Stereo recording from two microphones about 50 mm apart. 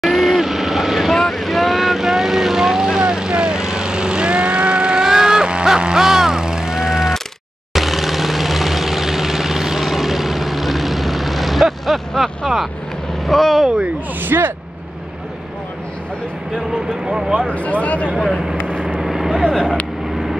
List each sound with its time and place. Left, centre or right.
0.0 s vehicle: centre
12.1 s a sound: centre
13.3 s speech: centre
14.2 s speech: right
17.0 s speech: centre
17.5 s speech: left
18.9 s vehicle: centre